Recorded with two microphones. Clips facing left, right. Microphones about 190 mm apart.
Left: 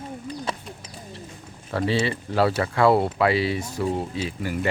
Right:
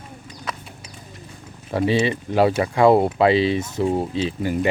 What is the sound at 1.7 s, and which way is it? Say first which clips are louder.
Speech: right 4 dB; 15° right (ahead or behind).